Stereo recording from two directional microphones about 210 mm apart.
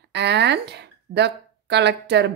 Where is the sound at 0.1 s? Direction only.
55° right (ahead or behind).